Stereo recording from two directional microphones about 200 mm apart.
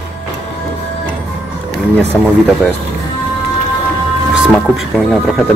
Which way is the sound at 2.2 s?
5° left (ahead or behind).